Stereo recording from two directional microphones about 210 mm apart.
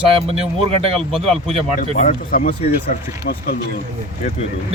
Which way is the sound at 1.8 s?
35° left (ahead or behind).